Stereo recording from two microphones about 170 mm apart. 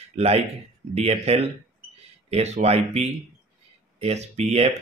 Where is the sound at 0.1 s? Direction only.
40° right (ahead or behind).